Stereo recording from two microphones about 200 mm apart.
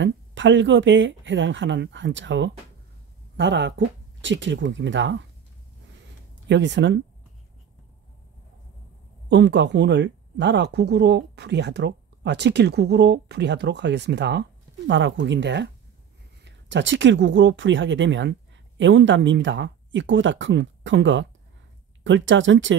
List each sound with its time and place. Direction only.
0.0 s speech: 65° right (ahead or behind)
6.5 s speech: 60° right (ahead or behind)
9.3 s speech: 60° right (ahead or behind)